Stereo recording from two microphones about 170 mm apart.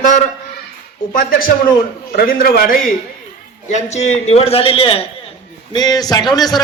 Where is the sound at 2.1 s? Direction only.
60° left (ahead or behind).